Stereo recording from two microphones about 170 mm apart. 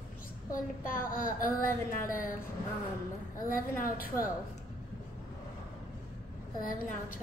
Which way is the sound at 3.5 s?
55° left (ahead or behind).